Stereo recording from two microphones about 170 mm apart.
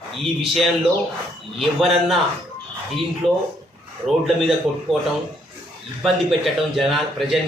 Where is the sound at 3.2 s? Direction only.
35° right (ahead or behind).